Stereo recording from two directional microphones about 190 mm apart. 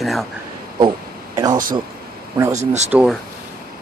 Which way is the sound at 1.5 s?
45° right (ahead or behind).